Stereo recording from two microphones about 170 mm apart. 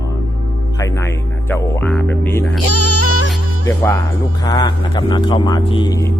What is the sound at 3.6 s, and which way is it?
Speech, 15° left (ahead or behind).